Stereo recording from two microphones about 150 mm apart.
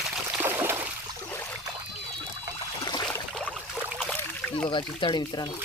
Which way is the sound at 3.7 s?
5° right (ahead or behind).